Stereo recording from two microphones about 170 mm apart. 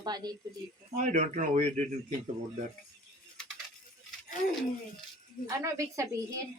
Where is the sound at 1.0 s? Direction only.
45° right (ahead or behind).